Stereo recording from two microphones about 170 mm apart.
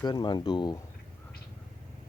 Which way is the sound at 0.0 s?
25° left (ahead or behind).